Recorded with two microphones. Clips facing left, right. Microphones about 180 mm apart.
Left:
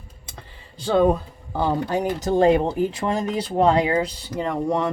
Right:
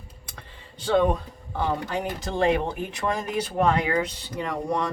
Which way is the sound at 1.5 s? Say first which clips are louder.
Left 5 dB; 40° left (ahead or behind).